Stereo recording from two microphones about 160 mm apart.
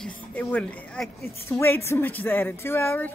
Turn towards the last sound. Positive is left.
turn(degrees=15)  # may be behind; listen again after turning